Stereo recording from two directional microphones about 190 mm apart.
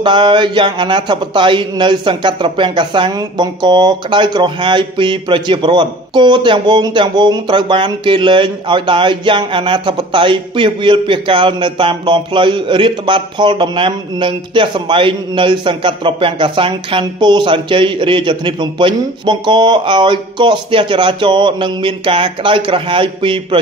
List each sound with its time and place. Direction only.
0.0 s speech: 25° right (ahead or behind)